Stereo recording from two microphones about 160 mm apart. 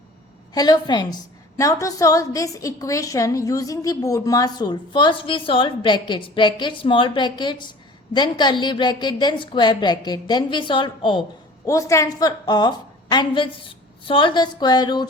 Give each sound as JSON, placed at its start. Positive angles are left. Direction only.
{"t": 0.5, "sound": "a woman's voice", "side_deg": 25}
{"t": 11.6, "sound": "a woman's voice", "side_deg": 20}